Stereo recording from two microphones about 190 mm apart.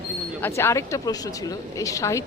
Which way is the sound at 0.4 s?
15° left (ahead or behind).